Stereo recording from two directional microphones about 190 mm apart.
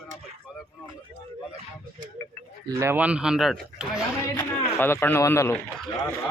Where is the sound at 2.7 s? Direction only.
15° right (ahead or behind).